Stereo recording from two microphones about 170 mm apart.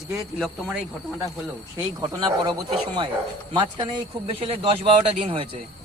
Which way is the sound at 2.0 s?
25° right (ahead or behind).